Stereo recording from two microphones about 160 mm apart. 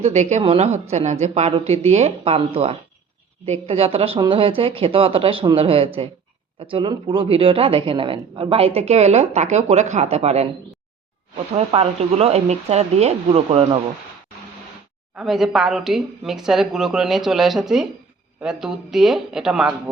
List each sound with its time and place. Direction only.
0.0 s a woman's voice: 45° right (ahead or behind)
11.5 s a woman's voice: 40° right (ahead or behind)
15.1 s speech: centre (ahead or behind)